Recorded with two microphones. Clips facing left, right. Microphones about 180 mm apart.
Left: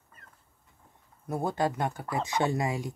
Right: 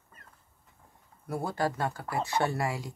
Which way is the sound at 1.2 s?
20° left (ahead or behind).